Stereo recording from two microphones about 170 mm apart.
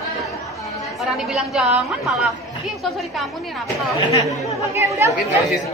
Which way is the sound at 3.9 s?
20° left (ahead or behind).